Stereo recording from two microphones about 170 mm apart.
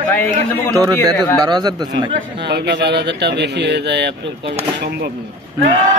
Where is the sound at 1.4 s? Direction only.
25° right (ahead or behind).